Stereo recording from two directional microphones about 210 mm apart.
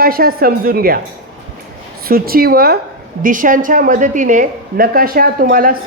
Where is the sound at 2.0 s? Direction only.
45° right (ahead or behind).